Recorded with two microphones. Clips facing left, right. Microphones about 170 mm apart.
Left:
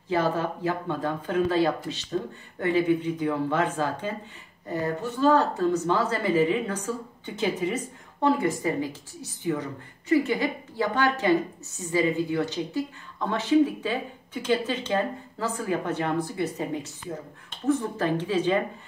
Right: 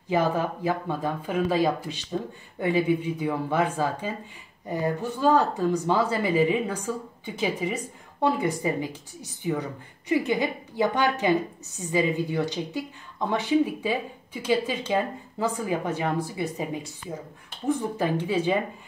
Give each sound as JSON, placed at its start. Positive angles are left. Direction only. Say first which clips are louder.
{"t": 0.1, "sound": "speech", "louder": "right 1 dB", "side_deg": -15}